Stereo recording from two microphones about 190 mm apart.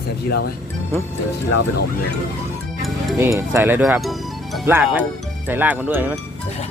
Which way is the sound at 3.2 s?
15° right (ahead or behind).